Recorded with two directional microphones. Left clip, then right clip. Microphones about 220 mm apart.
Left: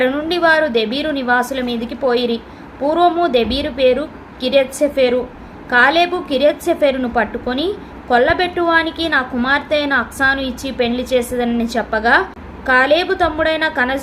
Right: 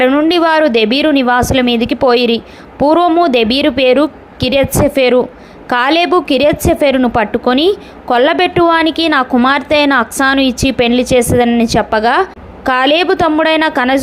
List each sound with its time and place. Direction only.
0.0 s a woman's voice: 30° right (ahead or behind)